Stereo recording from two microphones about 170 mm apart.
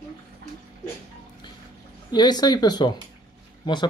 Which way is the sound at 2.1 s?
25° left (ahead or behind).